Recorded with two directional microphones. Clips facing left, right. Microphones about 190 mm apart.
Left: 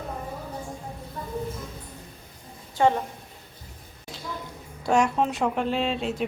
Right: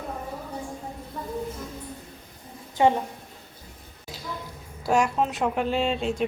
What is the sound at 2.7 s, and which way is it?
Speech, 15° right (ahead or behind).